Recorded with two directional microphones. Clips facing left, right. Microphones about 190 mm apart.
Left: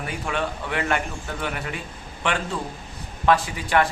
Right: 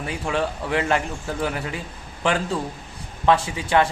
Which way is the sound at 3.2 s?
25° right (ahead or behind).